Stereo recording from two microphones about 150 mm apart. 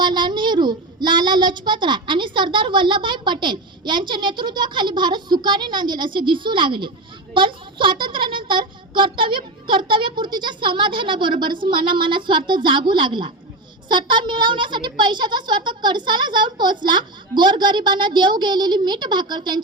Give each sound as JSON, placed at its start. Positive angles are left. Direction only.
{"t": 0.0, "sound": "a child's voice", "side_deg": -30}